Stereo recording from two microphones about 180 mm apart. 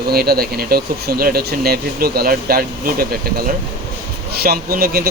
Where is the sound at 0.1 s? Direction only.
60° right (ahead or behind).